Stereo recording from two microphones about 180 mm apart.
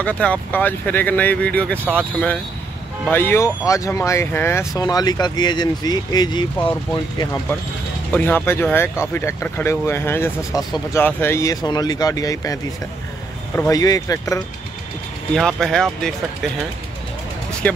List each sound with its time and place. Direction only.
0.0 s speech: 10° left (ahead or behind); by 6.7 s 25° left (ahead or behind)
8.5 s speech: 10° left (ahead or behind)
13.6 s speech: 20° left (ahead or behind)
15.3 s speech: 5° left (ahead or behind)
17.6 s speech: 5° left (ahead or behind)